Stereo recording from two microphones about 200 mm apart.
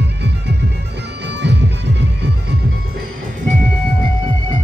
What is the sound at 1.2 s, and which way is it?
Music, 60° right (ahead or behind).